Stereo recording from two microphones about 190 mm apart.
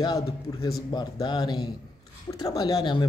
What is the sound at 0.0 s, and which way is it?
A man's voice, 20° left (ahead or behind).